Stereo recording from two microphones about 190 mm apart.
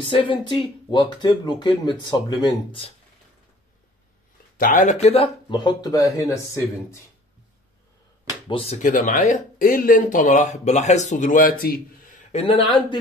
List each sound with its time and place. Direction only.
0.0 s speech: 25° left (ahead or behind)
4.6 s speech: 45° left (ahead or behind); by 7.0 s 15° left (ahead or behind)
8.5 s speech: 30° left (ahead or behind)